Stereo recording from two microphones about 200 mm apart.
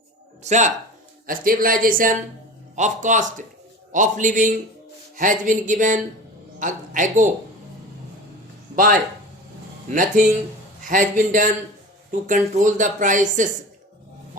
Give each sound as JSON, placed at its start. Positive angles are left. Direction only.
{"t": 0.4, "sound": "speech", "side_deg": -35}
{"t": 8.7, "sound": "speech", "side_deg": -45}